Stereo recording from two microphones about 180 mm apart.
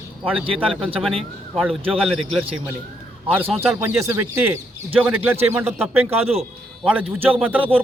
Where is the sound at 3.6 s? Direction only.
15° right (ahead or behind).